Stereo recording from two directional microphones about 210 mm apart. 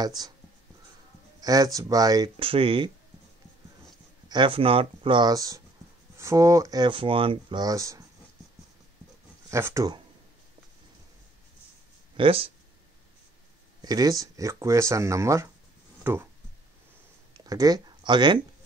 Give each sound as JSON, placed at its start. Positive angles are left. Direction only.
{"t": 0.2, "sound": "speech", "side_deg": -20}
{"t": 1.4, "sound": "speech", "side_deg": -15}
{"t": 4.3, "sound": "speech", "side_deg": -25}
{"t": 9.5, "sound": "speech", "side_deg": -10}
{"t": 12.2, "sound": "speech", "side_deg": -25}
{"t": 13.7, "sound": "speech", "side_deg": -20}
{"t": 17.5, "sound": "speech", "side_deg": -15}